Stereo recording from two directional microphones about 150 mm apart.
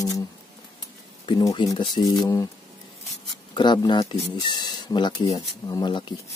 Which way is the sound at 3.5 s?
30° left (ahead or behind).